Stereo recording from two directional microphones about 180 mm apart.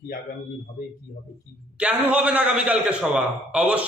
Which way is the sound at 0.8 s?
55° left (ahead or behind).